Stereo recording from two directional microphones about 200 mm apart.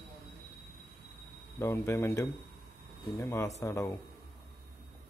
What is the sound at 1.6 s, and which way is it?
Speech, 15° left (ahead or behind).